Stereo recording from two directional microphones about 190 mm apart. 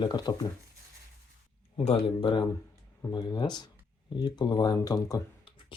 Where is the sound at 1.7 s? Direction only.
25° left (ahead or behind).